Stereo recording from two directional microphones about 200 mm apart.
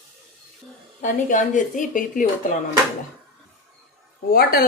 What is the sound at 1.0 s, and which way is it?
Speech, 40° left (ahead or behind).